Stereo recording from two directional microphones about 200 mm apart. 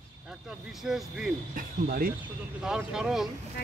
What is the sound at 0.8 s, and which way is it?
Speech, centre (ahead or behind).